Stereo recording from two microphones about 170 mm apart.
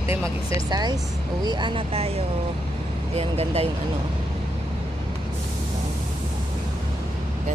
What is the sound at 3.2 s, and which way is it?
Speech, 35° right (ahead or behind).